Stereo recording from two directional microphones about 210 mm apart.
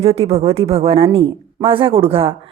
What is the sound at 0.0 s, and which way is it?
A woman's voice, 30° right (ahead or behind).